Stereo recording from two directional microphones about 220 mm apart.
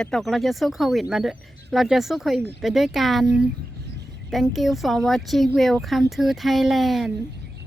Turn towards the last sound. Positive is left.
turn(degrees=0)  # may be behind; listen again after turning